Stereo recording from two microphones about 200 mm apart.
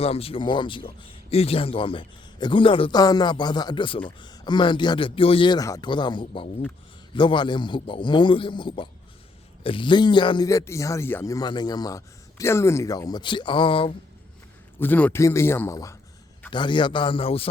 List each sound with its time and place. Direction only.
0.0 s a man's voice: 30° left (ahead or behind)
14.8 s a man's voice: 10° left (ahead or behind); by 17.5 s 30° left (ahead or behind)